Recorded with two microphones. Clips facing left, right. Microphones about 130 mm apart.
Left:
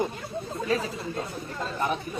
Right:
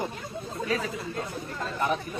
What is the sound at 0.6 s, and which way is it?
Speech, 30° left (ahead or behind).